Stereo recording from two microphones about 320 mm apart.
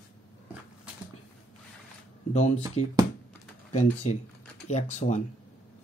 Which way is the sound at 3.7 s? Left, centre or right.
Left.